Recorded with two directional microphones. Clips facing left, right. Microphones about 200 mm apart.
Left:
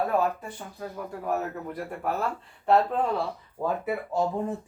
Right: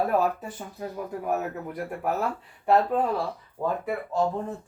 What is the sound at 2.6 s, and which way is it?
A man's voice, 5° right (ahead or behind).